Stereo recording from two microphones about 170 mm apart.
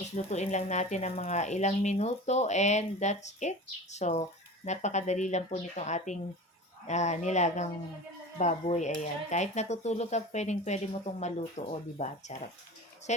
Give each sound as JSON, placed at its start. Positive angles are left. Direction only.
{"t": 0.3, "sound": "speech", "side_deg": 40}